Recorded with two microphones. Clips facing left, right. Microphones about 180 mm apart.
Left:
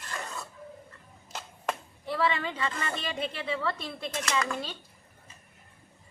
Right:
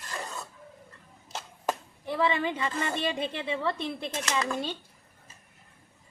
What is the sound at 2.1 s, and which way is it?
A woman's voice, 15° right (ahead or behind).